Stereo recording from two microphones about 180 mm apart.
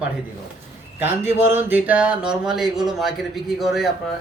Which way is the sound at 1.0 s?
10° right (ahead or behind).